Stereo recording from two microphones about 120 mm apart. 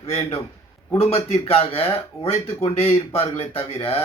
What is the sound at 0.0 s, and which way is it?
Speech, 55° left (ahead or behind).